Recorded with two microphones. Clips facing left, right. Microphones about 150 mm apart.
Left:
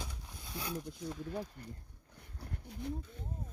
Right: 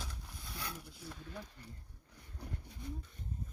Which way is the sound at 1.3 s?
45° left (ahead or behind).